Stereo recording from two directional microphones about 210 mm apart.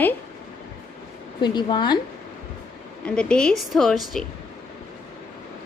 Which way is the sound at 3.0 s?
5° left (ahead or behind).